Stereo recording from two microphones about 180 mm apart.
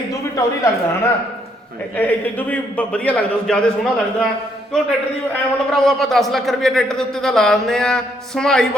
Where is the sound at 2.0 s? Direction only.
10° left (ahead or behind).